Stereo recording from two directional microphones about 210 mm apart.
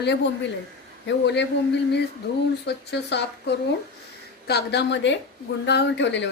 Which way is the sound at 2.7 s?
55° left (ahead or behind).